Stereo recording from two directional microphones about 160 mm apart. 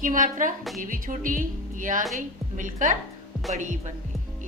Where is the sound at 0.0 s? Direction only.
55° right (ahead or behind).